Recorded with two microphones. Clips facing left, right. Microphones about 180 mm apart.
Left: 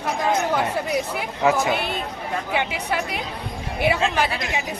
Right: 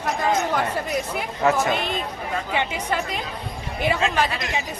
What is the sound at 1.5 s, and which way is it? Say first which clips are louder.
Speech: left 1 dB; 10° left (ahead or behind).